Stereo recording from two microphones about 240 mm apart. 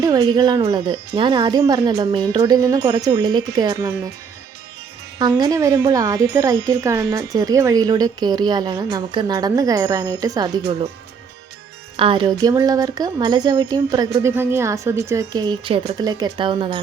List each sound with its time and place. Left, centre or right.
0.0 s a woman's voice: centre
5.4 s a woman's voice: centre
11.9 s a woman's voice: right